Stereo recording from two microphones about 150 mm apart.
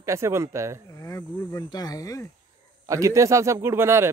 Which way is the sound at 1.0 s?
25° left (ahead or behind).